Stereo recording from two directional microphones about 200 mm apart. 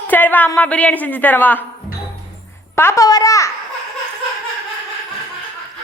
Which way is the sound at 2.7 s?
15° left (ahead or behind).